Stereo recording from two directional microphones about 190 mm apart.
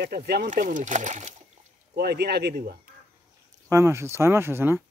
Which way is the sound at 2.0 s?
55° right (ahead or behind).